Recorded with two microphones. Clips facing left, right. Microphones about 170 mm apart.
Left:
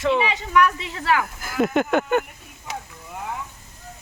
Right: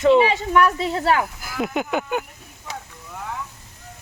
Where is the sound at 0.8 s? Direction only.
35° right (ahead or behind).